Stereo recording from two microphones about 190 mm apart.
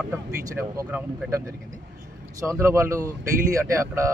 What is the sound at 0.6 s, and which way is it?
Speech, 10° right (ahead or behind).